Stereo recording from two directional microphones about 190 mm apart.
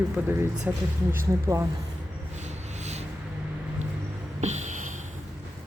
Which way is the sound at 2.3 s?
35° right (ahead or behind).